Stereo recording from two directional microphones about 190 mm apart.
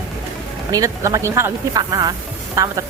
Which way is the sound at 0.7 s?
15° right (ahead or behind).